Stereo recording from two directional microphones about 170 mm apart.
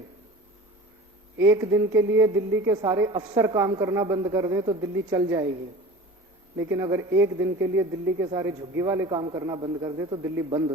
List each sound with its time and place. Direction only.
1.4 s a woman's voice: 15° right (ahead or behind)
6.6 s a woman's voice: 15° right (ahead or behind)